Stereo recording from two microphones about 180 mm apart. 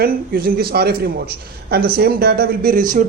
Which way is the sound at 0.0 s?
55° right (ahead or behind).